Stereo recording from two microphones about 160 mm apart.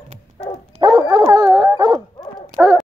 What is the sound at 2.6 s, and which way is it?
Fowl, centre (ahead or behind).